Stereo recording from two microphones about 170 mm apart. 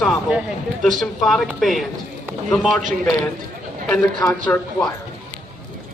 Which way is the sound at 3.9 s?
5° left (ahead or behind).